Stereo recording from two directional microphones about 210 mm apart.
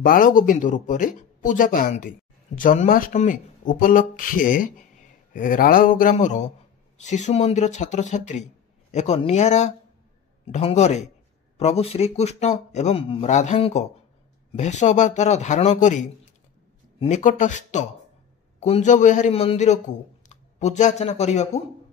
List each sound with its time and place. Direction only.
0.0 s speech: 40° left (ahead or behind)